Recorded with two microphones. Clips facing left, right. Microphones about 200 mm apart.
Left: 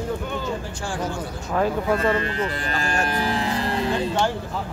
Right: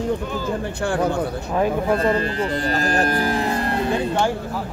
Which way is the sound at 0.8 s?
60° right (ahead or behind).